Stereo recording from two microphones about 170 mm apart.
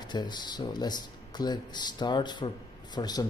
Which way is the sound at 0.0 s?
25° left (ahead or behind).